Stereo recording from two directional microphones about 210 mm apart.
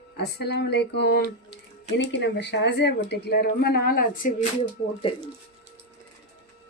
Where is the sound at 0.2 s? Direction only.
50° left (ahead or behind).